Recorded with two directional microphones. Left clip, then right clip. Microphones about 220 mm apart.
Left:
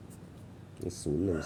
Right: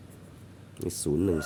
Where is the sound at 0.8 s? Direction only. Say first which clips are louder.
Right 5 dB; 35° right (ahead or behind).